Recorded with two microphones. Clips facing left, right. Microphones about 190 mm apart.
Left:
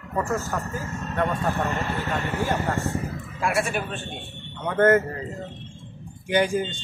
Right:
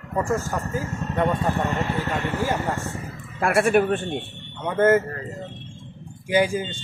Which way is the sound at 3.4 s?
60° right (ahead or behind).